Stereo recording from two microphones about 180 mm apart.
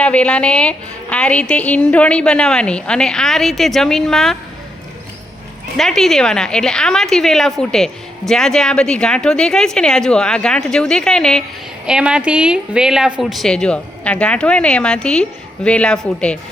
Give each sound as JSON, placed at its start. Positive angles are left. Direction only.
{"t": 0.0, "sound": "a woman's voice", "side_deg": 5}
{"t": 5.7, "sound": "a woman's voice", "side_deg": 0}